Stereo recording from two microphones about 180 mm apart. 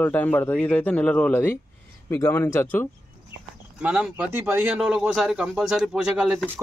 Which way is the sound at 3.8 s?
5° right (ahead or behind).